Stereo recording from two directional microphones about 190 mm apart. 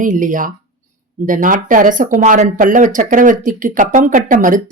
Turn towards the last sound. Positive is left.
turn(degrees=-45)  # may be behind; listen again after turning